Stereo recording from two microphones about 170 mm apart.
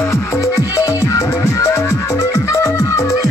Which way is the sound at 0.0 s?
15° left (ahead or behind).